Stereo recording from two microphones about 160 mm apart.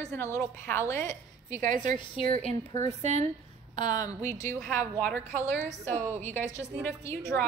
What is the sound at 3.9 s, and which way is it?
A woman's voice, 20° left (ahead or behind).